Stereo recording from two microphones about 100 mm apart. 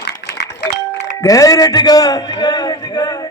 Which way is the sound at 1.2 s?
35° left (ahead or behind).